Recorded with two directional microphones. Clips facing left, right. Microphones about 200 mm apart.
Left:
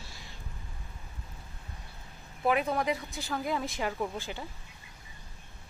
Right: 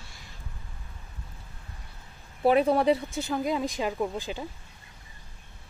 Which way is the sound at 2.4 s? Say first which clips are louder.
Right 7 dB; 35° right (ahead or behind).